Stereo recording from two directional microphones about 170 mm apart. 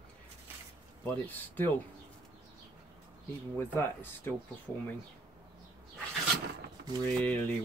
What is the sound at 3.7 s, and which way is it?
Speech, 10° left (ahead or behind).